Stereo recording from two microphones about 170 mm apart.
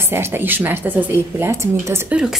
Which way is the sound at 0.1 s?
15° right (ahead or behind).